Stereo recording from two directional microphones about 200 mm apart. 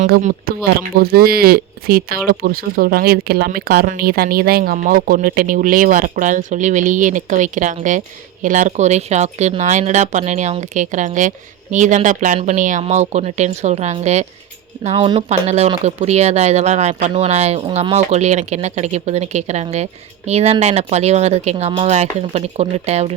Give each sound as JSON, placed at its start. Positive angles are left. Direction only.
{"t": 0.0, "sound": "speech", "side_deg": -40}